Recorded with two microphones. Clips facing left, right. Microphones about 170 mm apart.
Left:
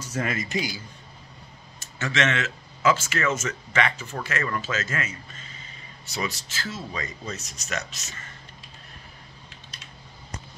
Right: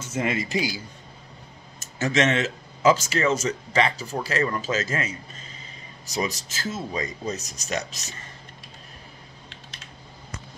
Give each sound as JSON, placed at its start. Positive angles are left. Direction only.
{"t": 0.0, "sound": "speech", "side_deg": -25}
{"t": 1.8, "sound": "speech", "side_deg": -40}